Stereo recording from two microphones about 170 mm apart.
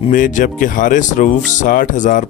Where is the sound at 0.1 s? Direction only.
50° left (ahead or behind).